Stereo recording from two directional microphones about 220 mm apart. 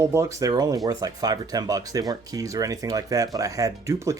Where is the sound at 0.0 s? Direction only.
10° right (ahead or behind).